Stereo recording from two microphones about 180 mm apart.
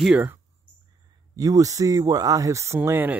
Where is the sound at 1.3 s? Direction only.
20° right (ahead or behind).